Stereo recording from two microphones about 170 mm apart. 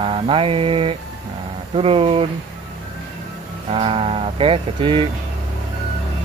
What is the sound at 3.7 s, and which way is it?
Speech, 35° right (ahead or behind).